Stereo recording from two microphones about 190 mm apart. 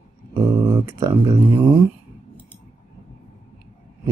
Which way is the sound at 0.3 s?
10° right (ahead or behind).